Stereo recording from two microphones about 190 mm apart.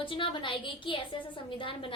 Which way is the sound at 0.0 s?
25° left (ahead or behind).